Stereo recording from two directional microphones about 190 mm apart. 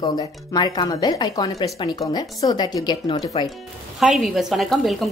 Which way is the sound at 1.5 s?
30° left (ahead or behind).